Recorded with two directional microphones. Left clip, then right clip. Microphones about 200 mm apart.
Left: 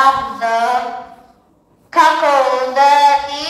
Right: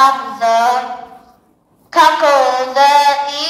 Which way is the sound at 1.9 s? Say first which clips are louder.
Right 1 dB; 30° right (ahead or behind).